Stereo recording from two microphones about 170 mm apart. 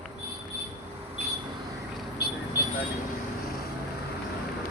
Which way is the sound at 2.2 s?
70° left (ahead or behind).